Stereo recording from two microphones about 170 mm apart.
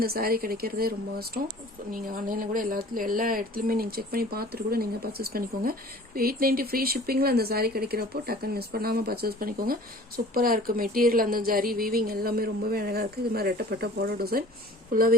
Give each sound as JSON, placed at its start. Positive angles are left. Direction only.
{"t": 0.0, "sound": "speech", "side_deg": -65}